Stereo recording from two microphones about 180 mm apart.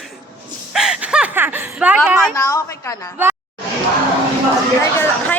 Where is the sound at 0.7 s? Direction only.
5° right (ahead or behind).